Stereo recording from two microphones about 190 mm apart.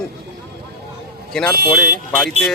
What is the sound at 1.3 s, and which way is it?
A man's voice, 5° left (ahead or behind).